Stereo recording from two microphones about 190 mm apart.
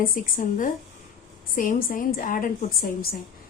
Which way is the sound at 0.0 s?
45° left (ahead or behind).